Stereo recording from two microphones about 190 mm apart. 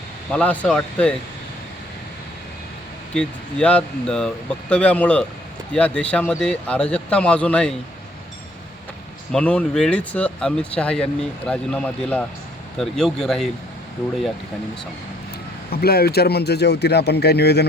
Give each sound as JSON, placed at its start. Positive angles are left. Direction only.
{"t": 0.3, "sound": "speech", "side_deg": 5}
{"t": 3.2, "sound": "speech", "side_deg": 5}
{"t": 9.3, "sound": "speech", "side_deg": 5}
{"t": 15.7, "sound": "speech", "side_deg": 55}